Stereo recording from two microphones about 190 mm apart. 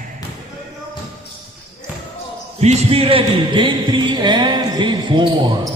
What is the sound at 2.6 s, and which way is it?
A man's voice, 35° right (ahead or behind).